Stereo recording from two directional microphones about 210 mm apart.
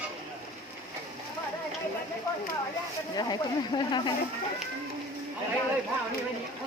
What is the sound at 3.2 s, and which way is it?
Speech, 20° left (ahead or behind).